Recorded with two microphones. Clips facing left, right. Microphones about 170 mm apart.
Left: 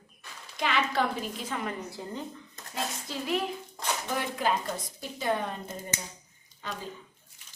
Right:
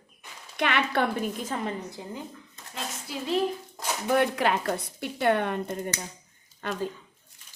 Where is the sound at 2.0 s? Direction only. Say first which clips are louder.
Even; 15° right (ahead or behind).